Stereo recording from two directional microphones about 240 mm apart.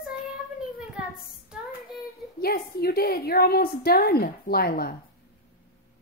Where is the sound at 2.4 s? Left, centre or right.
Left.